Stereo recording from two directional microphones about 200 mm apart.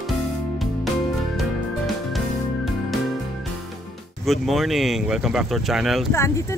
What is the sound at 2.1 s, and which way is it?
Music, centre (ahead or behind).